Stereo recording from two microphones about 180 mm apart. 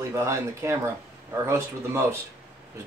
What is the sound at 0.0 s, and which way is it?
Speech, 15° right (ahead or behind).